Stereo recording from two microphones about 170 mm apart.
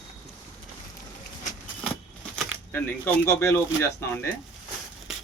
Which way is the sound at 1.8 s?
5° left (ahead or behind).